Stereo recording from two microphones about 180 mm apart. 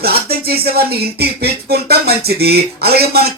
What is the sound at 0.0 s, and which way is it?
Speech, 60° right (ahead or behind).